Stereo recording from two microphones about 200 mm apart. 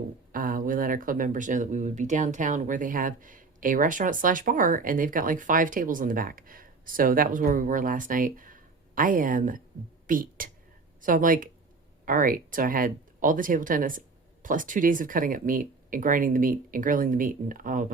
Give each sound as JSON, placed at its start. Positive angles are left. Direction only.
{"t": 0.3, "sound": "speech", "side_deg": -45}